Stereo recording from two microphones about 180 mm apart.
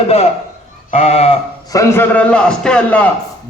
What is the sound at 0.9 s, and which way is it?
Sheep, 35° left (ahead or behind).